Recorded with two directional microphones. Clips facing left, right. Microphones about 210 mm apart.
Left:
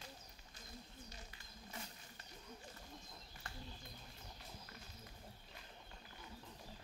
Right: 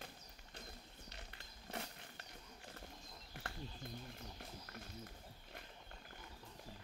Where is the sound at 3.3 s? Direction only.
55° right (ahead or behind).